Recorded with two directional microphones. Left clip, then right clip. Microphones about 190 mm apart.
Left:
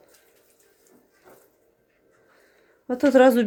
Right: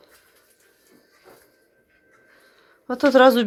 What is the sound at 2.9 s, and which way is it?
Speech, 25° left (ahead or behind).